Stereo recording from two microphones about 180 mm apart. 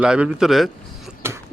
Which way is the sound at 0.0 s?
5° right (ahead or behind).